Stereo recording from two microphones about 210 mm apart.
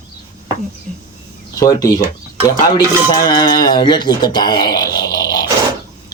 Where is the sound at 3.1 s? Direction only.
20° left (ahead or behind).